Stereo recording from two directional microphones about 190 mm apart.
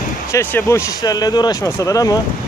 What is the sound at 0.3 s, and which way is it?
Speech, 10° left (ahead or behind).